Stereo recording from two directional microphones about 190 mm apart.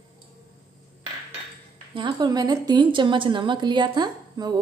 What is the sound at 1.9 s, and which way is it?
A woman's voice, 25° right (ahead or behind).